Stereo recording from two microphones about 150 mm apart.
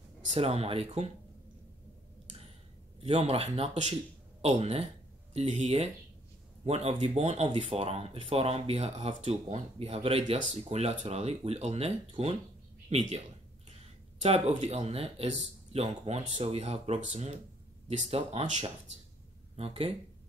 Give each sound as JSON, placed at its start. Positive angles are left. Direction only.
{"t": 0.3, "sound": "speech", "side_deg": -45}
{"t": 3.0, "sound": "speech", "side_deg": -40}
{"t": 14.2, "sound": "speech", "side_deg": -45}